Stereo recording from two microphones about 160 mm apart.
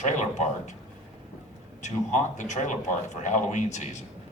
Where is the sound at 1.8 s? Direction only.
50° left (ahead or behind).